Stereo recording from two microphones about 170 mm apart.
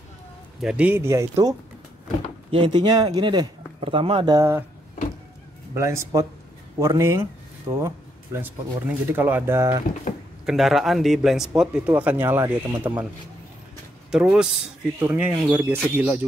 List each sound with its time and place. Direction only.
0.6 s speech: 5° right (ahead or behind)
2.5 s speech: 30° right (ahead or behind)
4.4 s speech: 15° right (ahead or behind)
5.8 s speech: 15° right (ahead or behind)
10.4 s a man's voice: centre (ahead or behind)
14.1 s a man's voice: 5° right (ahead or behind)